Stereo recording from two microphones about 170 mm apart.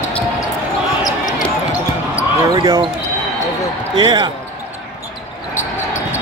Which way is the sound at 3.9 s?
25° right (ahead or behind).